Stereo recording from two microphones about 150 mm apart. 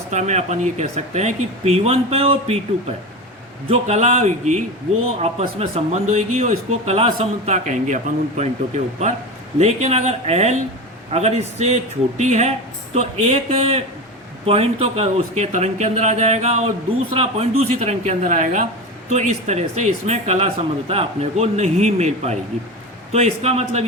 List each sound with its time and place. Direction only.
0.1 s speech: 50° right (ahead or behind)
3.7 s speech: 45° right (ahead or behind)